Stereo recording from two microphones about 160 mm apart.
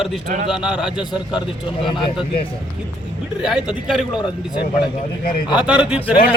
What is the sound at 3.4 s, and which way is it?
Speech, 5° right (ahead or behind).